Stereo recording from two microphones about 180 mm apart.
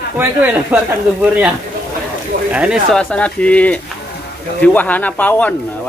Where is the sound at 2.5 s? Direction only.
5° right (ahead or behind).